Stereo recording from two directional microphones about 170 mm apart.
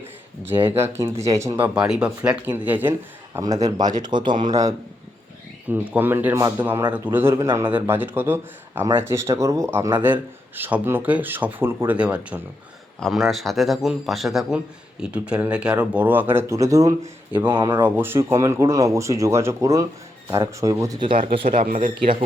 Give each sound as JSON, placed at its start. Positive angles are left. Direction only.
{"t": 0.4, "sound": "speech", "side_deg": -15}
{"t": 3.3, "sound": "speech", "side_deg": -20}
{"t": 5.6, "sound": "a man's voice", "side_deg": -10}
{"t": 21.5, "sound": "speech", "side_deg": -50}